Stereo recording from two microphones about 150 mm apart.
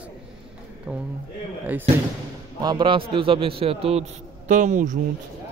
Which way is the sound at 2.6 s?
30° right (ahead or behind).